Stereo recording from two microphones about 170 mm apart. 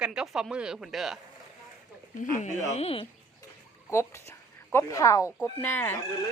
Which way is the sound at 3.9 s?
15° left (ahead or behind).